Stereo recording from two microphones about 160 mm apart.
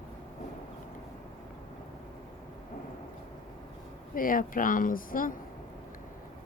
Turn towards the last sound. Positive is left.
turn(degrees=60)  # may be behind; listen again after turning